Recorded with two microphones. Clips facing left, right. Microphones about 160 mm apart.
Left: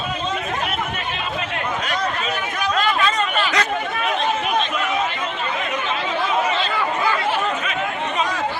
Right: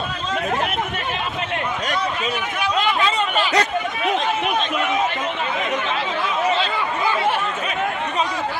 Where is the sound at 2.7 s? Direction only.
15° right (ahead or behind).